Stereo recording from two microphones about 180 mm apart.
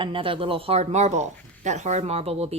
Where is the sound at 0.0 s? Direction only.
30° right (ahead or behind).